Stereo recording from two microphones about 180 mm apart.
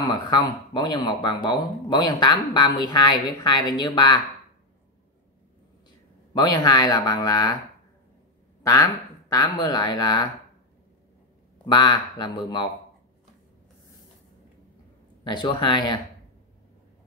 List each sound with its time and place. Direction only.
0.0 s speech: 20° left (ahead or behind)
6.3 s speech: 20° left (ahead or behind)
9.6 s speech: 25° left (ahead or behind)
11.6 s speech: 25° left (ahead or behind)
15.2 s speech: 25° left (ahead or behind)